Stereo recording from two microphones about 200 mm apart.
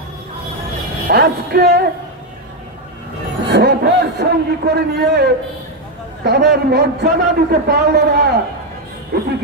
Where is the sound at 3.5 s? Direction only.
55° right (ahead or behind).